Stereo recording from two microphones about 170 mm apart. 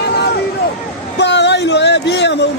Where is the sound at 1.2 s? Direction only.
90° left.